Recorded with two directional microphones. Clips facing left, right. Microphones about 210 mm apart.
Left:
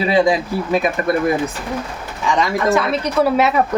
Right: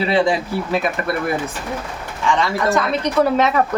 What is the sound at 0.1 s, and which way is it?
Speech, 15° left (ahead or behind).